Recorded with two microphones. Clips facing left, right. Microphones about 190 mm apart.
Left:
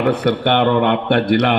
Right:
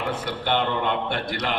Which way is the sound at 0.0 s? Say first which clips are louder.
Left 12 dB; 65° left (ahead or behind).